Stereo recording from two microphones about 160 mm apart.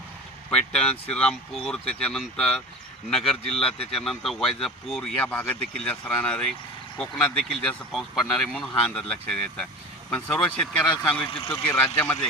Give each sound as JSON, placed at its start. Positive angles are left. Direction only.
{"t": 0.5, "sound": "speech", "side_deg": 5}
{"t": 11.3, "sound": "speech", "side_deg": 35}
{"t": 11.7, "sound": "speech", "side_deg": 15}